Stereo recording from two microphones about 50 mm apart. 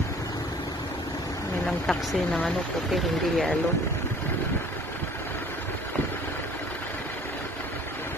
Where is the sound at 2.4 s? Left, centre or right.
Centre.